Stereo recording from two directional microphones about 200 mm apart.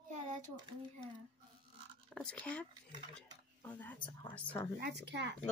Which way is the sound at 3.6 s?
10° left (ahead or behind).